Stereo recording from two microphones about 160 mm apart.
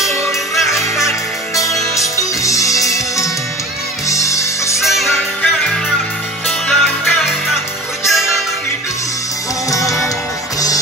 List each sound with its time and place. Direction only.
0.7 s music: centre (ahead or behind)
1.5 s music: 20° left (ahead or behind)
4.8 s music: centre (ahead or behind)
9.8 s music: centre (ahead or behind)